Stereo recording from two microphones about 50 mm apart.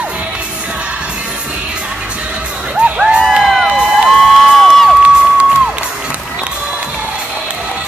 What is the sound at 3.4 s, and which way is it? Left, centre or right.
Crowd, centre.